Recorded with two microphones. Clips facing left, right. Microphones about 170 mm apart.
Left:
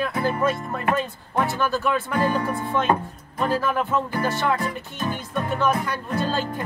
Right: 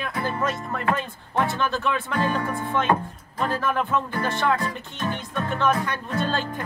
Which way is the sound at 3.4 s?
10° left (ahead or behind).